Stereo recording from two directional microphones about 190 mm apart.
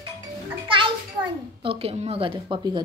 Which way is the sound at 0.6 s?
25° right (ahead or behind).